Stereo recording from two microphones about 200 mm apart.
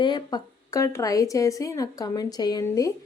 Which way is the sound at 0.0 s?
20° left (ahead or behind).